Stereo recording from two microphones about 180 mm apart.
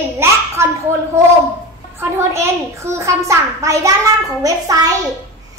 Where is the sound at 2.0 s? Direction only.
15° right (ahead or behind).